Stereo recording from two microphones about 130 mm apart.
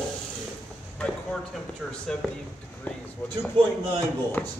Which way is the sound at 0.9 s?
10° left (ahead or behind).